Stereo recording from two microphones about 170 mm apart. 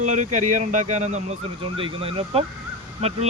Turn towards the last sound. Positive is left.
turn(degrees=-40)  # may be behind; listen again after turning